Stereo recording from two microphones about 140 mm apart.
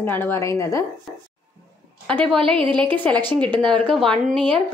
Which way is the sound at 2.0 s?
5° left (ahead or behind).